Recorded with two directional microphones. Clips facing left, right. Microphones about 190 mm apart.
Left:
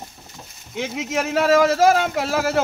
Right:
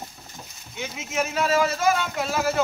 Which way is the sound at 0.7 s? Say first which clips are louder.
Left 5 dB; 75° left (ahead or behind).